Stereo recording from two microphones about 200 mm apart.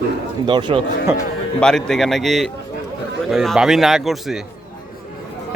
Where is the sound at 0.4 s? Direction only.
25° right (ahead or behind).